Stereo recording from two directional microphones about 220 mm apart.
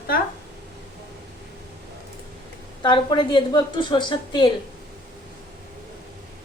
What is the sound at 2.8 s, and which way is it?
A woman's voice, 20° left (ahead or behind).